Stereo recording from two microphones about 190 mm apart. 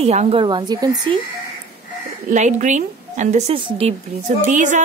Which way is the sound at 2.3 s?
40° right (ahead or behind).